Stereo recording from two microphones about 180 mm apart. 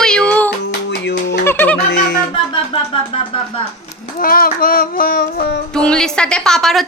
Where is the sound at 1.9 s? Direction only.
60° left (ahead or behind).